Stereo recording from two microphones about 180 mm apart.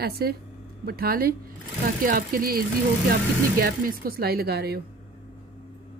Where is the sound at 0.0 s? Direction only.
60° right (ahead or behind).